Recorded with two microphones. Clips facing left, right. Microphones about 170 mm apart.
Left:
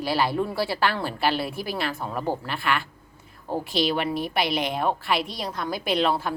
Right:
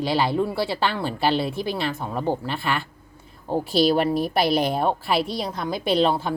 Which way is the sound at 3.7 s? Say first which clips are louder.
Right 6 dB; 35° right (ahead or behind).